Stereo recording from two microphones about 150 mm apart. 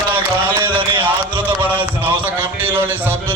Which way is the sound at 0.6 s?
35° right (ahead or behind).